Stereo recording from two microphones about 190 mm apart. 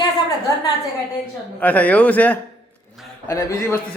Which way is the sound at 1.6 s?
10° left (ahead or behind).